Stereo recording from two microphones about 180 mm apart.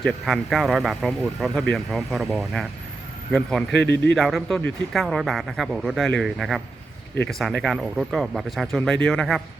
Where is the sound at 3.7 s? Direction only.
70° left (ahead or behind).